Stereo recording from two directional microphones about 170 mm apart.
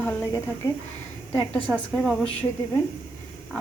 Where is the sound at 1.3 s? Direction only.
10° left (ahead or behind).